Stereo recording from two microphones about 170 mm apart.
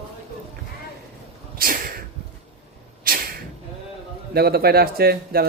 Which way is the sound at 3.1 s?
55° right (ahead or behind).